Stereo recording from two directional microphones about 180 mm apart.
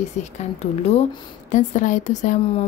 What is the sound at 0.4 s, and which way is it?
A woman's voice, 35° left (ahead or behind).